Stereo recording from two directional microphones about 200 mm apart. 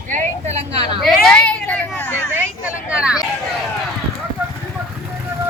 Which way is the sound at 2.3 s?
5° right (ahead or behind).